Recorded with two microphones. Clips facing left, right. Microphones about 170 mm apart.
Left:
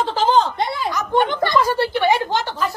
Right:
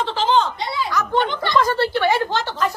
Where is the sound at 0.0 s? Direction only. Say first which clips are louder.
Left 2 dB; 40° left (ahead or behind).